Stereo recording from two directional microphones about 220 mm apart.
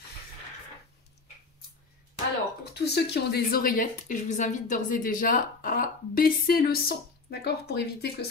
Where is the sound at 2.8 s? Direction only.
45° left (ahead or behind).